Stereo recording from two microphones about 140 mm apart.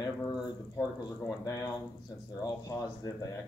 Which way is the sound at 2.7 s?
20° left (ahead or behind).